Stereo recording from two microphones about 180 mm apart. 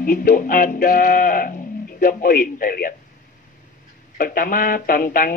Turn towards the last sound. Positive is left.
turn(degrees=50)  # may be behind; listen again after turning